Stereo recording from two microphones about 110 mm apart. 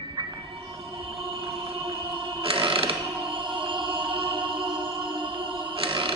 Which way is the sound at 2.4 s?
55° right (ahead or behind).